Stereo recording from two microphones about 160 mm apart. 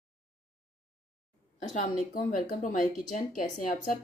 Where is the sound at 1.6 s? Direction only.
50° left (ahead or behind).